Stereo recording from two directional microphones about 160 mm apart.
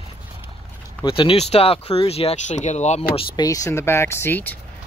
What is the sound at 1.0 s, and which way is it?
Speech, 35° left (ahead or behind).